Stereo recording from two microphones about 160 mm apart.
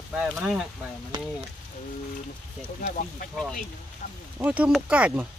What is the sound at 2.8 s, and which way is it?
Speech, 55° left (ahead or behind).